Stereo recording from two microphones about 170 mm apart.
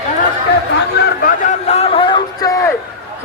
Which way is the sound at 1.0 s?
55° left (ahead or behind).